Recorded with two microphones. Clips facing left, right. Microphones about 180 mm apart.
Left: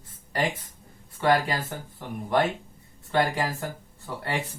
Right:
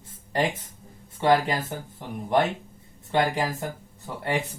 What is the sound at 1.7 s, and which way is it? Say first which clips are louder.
Speech: right 2 dB; 15° right (ahead or behind).